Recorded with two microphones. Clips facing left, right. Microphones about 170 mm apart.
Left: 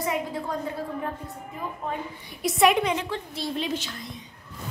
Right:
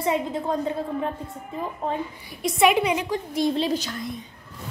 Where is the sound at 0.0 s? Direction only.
25° right (ahead or behind).